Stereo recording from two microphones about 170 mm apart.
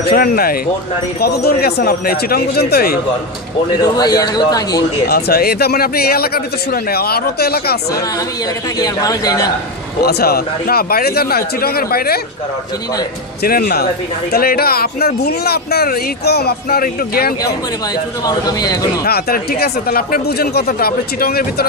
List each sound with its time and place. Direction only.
0.0 s a man's voice: 60° left (ahead or behind)
3.8 s speech: 25° left (ahead or behind)
5.0 s a man's voice: 65° left (ahead or behind)
8.7 s speech: 20° left (ahead or behind)
9.9 s a man's voice: 70° left (ahead or behind)
13.4 s a man's voice: 60° left (ahead or behind)
18.2 s speech: 20° left (ahead or behind)
19.0 s a man's voice: 65° left (ahead or behind)